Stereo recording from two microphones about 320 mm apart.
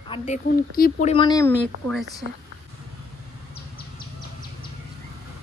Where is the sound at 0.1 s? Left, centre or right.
Centre.